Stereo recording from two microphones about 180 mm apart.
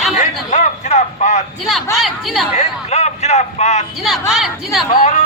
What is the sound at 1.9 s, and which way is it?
Speech, centre (ahead or behind).